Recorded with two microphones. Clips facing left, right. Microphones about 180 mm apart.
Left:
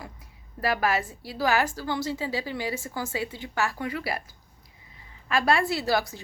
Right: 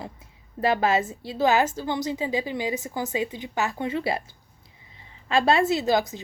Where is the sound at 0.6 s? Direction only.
25° right (ahead or behind).